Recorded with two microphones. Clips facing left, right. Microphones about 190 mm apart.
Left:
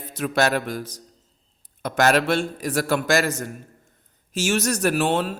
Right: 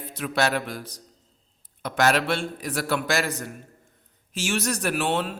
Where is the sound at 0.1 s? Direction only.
45° left (ahead or behind).